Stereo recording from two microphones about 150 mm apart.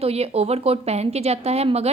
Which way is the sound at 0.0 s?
45° right (ahead or behind).